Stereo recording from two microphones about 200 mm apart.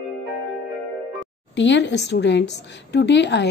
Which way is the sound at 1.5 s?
60° left (ahead or behind).